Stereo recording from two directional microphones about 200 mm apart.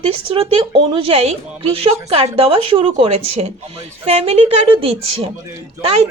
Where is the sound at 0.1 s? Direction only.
25° right (ahead or behind).